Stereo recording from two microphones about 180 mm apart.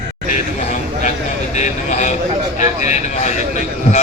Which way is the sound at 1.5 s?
40° left (ahead or behind).